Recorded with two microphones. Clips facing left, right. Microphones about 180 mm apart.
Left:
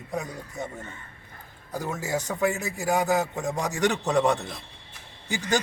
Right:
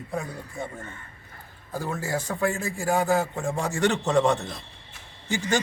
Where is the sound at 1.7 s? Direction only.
15° left (ahead or behind).